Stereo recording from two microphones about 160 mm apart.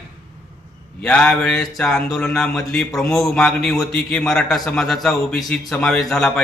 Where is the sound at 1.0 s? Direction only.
5° left (ahead or behind).